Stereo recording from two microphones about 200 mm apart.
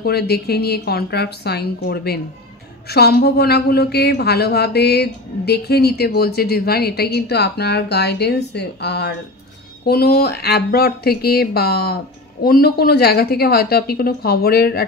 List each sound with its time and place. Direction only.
0.0 s a woman's voice: 55° left (ahead or behind)